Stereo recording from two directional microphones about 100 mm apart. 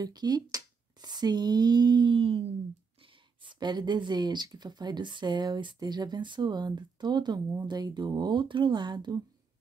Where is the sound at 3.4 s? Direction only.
50° right (ahead or behind).